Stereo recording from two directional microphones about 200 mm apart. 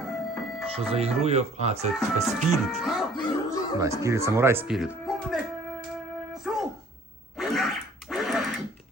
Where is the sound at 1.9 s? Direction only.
Centre (ahead or behind).